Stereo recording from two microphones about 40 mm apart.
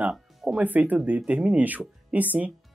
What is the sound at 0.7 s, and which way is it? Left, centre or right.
Speech, right.